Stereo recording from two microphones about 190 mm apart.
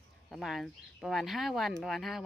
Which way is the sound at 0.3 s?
Centre (ahead or behind).